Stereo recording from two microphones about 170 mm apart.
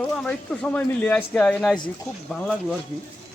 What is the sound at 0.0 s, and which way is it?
Speech, 5° left (ahead or behind).